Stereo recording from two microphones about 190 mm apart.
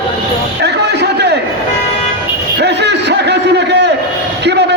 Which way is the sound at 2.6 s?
65° right (ahead or behind).